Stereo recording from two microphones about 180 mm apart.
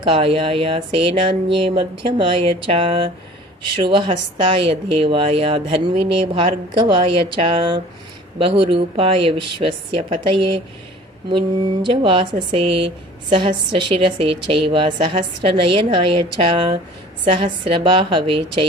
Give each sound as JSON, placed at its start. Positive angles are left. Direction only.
{"t": 0.0, "sound": "a woman's voice", "side_deg": -30}